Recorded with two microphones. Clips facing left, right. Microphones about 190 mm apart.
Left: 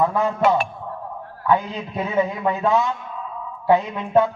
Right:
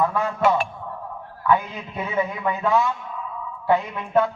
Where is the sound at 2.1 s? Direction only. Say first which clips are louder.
Left 3 dB; 20° left (ahead or behind).